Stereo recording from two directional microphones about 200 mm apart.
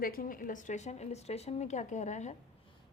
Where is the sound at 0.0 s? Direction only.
45° left (ahead or behind).